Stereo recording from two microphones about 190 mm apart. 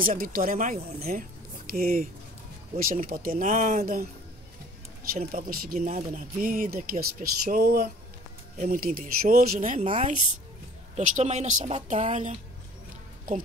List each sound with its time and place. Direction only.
0.0 s speech: 50° right (ahead or behind)
5.1 s speech: 50° right (ahead or behind)
11.0 s a woman's voice: 40° right (ahead or behind)